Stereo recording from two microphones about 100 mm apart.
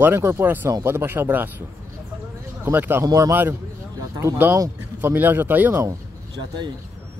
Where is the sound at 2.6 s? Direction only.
20° right (ahead or behind).